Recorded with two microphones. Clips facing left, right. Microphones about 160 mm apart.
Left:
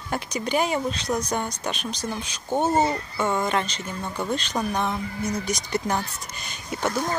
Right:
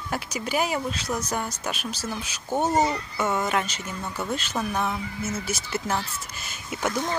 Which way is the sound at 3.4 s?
10° right (ahead or behind).